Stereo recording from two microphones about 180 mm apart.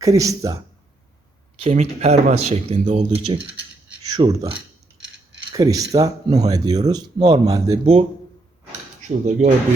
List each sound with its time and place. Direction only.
0.0 s speech: 20° right (ahead or behind)
1.5 s speech: 35° right (ahead or behind)
5.5 s speech: 20° right (ahead or behind)
9.0 s speech: 40° right (ahead or behind)